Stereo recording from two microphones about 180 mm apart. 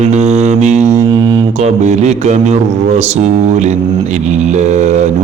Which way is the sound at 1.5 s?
40° right (ahead or behind).